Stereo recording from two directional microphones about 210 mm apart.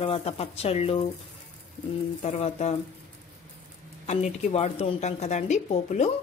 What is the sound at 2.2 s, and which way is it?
Speech, 30° left (ahead or behind).